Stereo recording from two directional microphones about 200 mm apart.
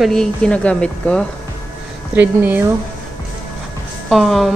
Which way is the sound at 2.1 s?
10° right (ahead or behind).